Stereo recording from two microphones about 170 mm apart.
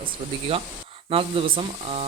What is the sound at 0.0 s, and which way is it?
Speech, 35° right (ahead or behind).